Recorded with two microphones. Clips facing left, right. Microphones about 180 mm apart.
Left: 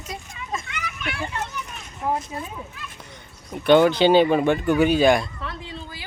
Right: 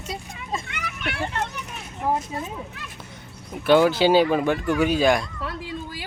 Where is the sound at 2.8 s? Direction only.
70° right (ahead or behind).